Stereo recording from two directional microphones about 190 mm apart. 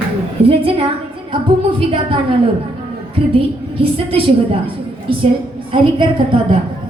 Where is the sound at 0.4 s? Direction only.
30° right (ahead or behind).